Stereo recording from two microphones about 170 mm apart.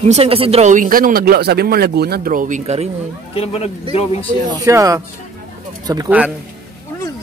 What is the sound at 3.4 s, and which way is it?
Speech, 35° left (ahead or behind).